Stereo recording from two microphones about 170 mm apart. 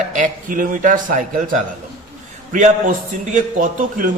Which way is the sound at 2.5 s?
50° right (ahead or behind).